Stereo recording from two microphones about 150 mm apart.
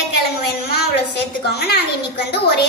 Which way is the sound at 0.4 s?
90° left.